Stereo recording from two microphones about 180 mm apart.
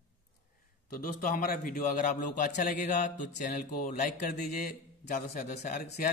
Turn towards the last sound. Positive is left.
turn(degrees=55)  # may be behind; listen again after turning